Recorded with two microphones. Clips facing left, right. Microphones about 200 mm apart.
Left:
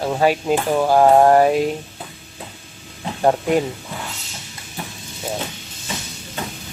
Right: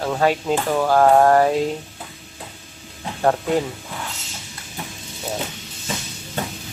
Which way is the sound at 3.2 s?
15° left (ahead or behind).